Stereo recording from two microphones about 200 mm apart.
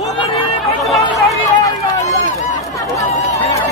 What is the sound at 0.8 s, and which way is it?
Speech, centre (ahead or behind).